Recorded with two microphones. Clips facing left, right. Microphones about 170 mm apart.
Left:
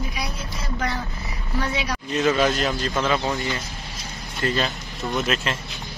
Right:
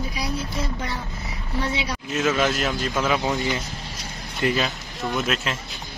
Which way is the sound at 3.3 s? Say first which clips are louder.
Right 2 dB; 20° right (ahead or behind).